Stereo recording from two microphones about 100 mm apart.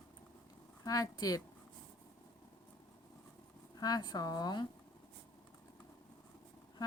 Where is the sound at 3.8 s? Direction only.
40° left (ahead or behind).